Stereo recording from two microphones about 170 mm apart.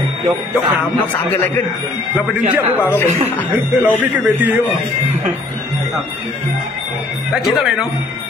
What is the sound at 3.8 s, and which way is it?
Mantra, 10° right (ahead or behind).